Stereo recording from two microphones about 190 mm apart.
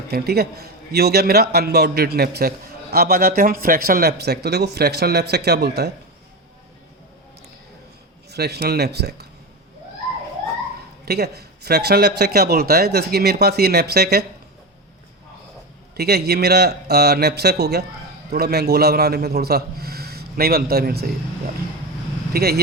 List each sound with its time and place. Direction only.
0.1 s speech: 55° right (ahead or behind)
8.3 s speech: 60° right (ahead or behind)
11.0 s speech: 55° right (ahead or behind)
16.0 s speech: 60° right (ahead or behind)
22.3 s speech: 55° right (ahead or behind)